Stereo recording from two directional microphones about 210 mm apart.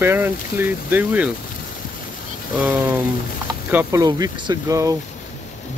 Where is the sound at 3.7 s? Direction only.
15° right (ahead or behind).